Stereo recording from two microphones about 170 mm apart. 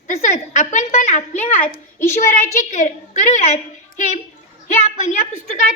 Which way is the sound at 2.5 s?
45° left (ahead or behind).